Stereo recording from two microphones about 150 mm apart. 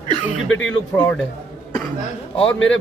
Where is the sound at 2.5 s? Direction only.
5° left (ahead or behind).